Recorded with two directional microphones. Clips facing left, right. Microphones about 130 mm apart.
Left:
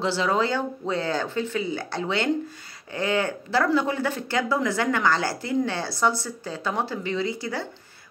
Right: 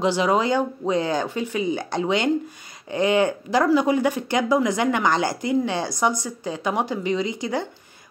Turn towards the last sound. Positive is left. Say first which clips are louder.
# right 3 dB
turn(degrees=-20)  # may be behind; listen again after turning